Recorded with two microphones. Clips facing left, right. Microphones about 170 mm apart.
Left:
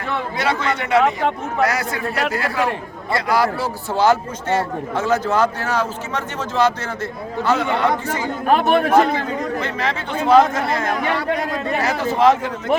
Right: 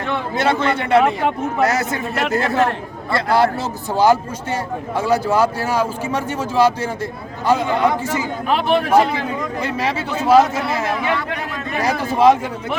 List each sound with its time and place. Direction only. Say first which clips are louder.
0.3 s a man's voice: right 4 dB; 30° right (ahead or behind)
1.0 s speech: right 1 dB; 5° right (ahead or behind)
1.6 s a man's voice: right 1 dB; 25° right (ahead or behind)
3.9 s speech: right 2 dB; 15° right (ahead or behind)
8.4 s a man's voice: left 2 dB; 50° left (ahead or behind)
9.6 s speech: right 2 dB; 10° right (ahead or behind)
11.0 s a man's voice: left 1 dB; 35° left (ahead or behind)
11.8 s speech: right 2 dB; 15° right (ahead or behind)